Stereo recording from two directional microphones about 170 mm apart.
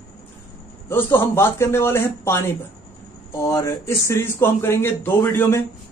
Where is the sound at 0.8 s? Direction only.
15° left (ahead or behind).